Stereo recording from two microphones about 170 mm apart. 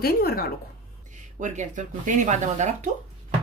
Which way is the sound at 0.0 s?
65° left (ahead or behind).